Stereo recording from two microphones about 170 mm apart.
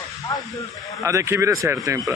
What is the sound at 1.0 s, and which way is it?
A man's voice, 20° right (ahead or behind).